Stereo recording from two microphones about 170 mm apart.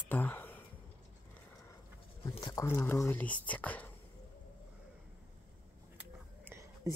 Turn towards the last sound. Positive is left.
turn(degrees=-15)  # may be behind; listen again after turning